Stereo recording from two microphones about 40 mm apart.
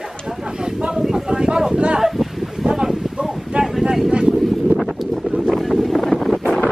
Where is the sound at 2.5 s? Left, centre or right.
Centre.